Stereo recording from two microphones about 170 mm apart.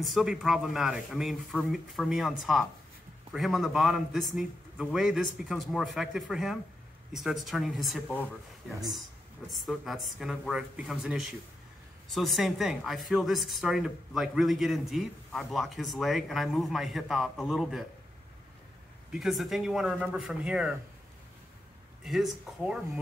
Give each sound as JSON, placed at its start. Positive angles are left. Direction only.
{"t": 0.0, "sound": "a man's voice", "side_deg": 0}
{"t": 9.5, "sound": "a man's voice", "side_deg": 0}
{"t": 19.1, "sound": "a man's voice", "side_deg": 0}
{"t": 22.0, "sound": "a man's voice", "side_deg": 0}